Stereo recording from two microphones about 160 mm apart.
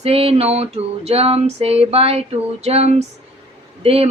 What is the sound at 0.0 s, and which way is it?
Speech, 40° right (ahead or behind).